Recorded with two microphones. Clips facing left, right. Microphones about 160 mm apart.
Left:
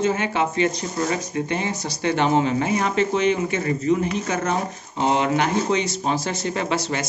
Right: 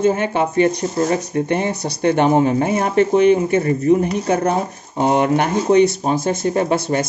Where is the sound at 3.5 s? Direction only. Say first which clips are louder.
Right 6 dB; 35° right (ahead or behind).